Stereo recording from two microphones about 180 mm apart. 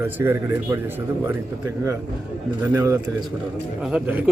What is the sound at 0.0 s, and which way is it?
Speech, 10° right (ahead or behind).